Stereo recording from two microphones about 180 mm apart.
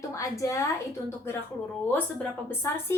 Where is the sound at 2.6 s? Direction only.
15° left (ahead or behind).